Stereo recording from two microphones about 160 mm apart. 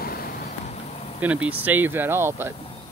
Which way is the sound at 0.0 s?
70° left (ahead or behind).